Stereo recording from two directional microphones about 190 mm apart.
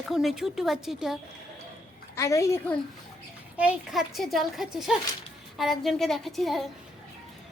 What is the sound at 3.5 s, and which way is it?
A woman's voice, 5° right (ahead or behind).